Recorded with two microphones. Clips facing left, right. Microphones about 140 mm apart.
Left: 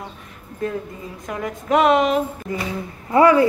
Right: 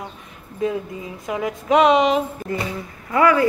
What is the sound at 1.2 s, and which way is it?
A woman's voice, 5° right (ahead or behind).